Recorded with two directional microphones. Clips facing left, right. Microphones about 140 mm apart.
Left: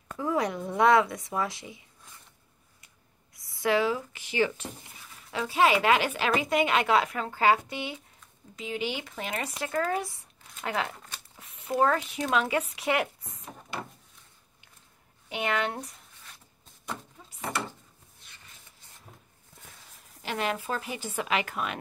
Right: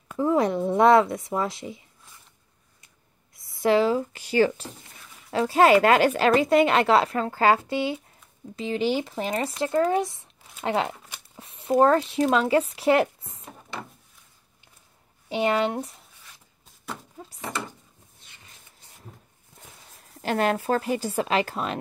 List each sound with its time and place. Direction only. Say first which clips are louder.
0.2 s speech: right 7 dB; 25° right (ahead or behind)
3.3 s a sound: right 5 dB; 25° right (ahead or behind)
4.3 s speech: right 6 dB; 40° right (ahead or behind)
15.2 s speech: right 6 dB; 30° right (ahead or behind)
20.2 s speech: right 7 dB; 45° right (ahead or behind)